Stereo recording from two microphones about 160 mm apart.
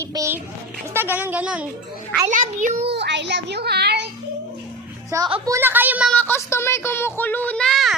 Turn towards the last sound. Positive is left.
turn(degrees=0)  # may be behind; listen again after turning